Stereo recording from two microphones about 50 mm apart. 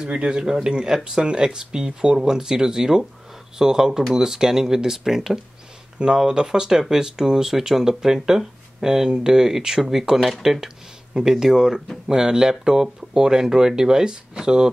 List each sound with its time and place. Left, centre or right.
0.0 s speech: centre